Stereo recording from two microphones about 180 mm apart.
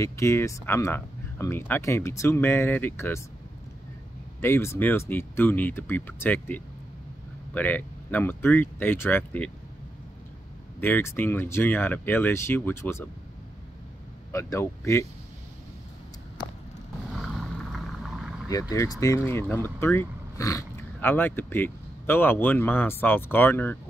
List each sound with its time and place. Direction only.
0.0 s speech: 15° left (ahead or behind)
4.4 s speech: 15° left (ahead or behind)
10.8 s speech: 10° left (ahead or behind)
14.3 s speech: 15° left (ahead or behind)
17.7 s vehicle: centre (ahead or behind)
18.5 s speech: 20° left (ahead or behind)